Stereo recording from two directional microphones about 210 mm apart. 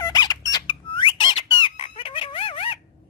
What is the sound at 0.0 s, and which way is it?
Squeak, 20° left (ahead or behind).